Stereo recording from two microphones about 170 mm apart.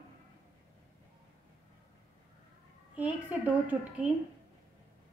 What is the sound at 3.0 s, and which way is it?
A woman's voice, 10° right (ahead or behind).